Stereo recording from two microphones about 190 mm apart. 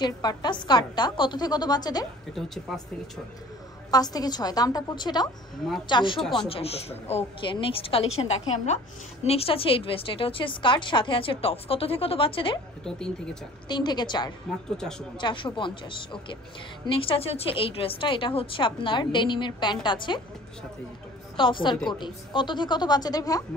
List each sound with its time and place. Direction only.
0.0 s a woman's voice: 20° left (ahead or behind)
2.3 s speech: centre (ahead or behind)
3.9 s a woman's voice: 20° left (ahead or behind)
12.8 s speech: 5° left (ahead or behind)
13.7 s a woman's voice: 25° left (ahead or behind)
14.8 s speech: 5° left (ahead or behind)
15.1 s a woman's voice: 25° left (ahead or behind)
21.4 s a woman's voice: 25° left (ahead or behind)